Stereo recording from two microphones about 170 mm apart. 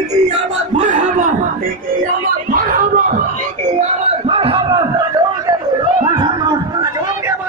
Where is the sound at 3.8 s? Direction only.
35° right (ahead or behind).